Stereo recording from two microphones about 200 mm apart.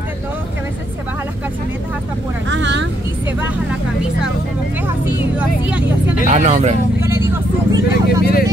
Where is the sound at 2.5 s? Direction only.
65° right (ahead or behind).